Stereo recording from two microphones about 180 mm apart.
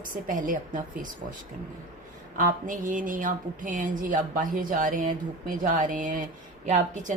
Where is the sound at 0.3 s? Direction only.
50° right (ahead or behind).